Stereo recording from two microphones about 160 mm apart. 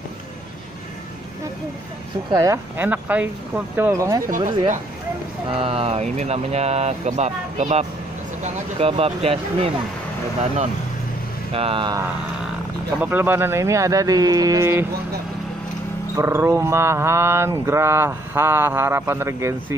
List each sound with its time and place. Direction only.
2.3 s a sound: 20° right (ahead or behind)
4.3 s speech: 55° right (ahead or behind)
5.5 s speech: 35° right (ahead or behind)
11.5 s speech: 35° right (ahead or behind)
13.0 s speech: 10° right (ahead or behind)
16.2 s a sound: 15° right (ahead or behind)